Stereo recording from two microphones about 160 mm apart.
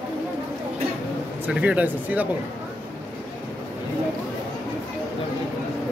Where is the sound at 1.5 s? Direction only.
10° right (ahead or behind).